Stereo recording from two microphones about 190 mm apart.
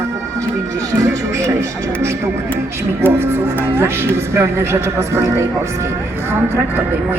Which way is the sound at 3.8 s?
15° right (ahead or behind).